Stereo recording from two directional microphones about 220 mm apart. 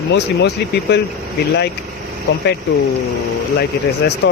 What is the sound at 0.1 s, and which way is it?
Speech, 50° left (ahead or behind).